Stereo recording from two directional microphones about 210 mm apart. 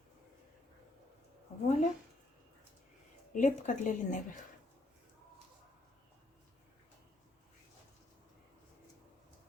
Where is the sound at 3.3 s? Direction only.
35° left (ahead or behind).